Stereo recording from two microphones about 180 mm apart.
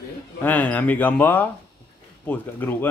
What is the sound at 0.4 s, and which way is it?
Speech, 10° left (ahead or behind).